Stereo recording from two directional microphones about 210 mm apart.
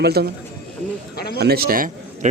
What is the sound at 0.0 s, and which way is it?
Speech, 50° right (ahead or behind).